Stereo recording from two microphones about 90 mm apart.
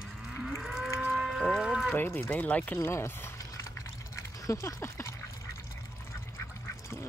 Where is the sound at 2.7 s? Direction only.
30° left (ahead or behind).